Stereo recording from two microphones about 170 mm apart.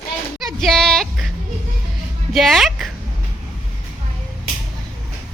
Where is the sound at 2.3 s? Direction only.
Centre (ahead or behind).